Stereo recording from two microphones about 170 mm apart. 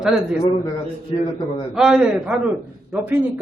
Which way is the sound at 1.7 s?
5° right (ahead or behind).